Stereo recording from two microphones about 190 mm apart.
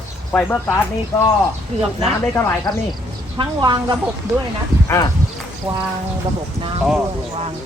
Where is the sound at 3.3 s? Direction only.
25° right (ahead or behind).